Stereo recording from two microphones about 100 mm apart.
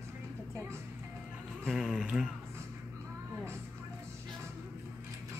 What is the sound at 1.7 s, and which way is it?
Speech, centre (ahead or behind).